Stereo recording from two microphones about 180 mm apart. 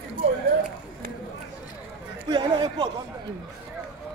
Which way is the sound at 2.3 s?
25° right (ahead or behind).